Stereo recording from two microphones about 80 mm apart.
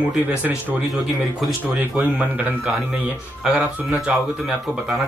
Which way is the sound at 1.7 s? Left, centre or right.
Centre.